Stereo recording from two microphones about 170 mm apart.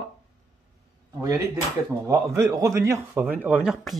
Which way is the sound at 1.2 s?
20° right (ahead or behind).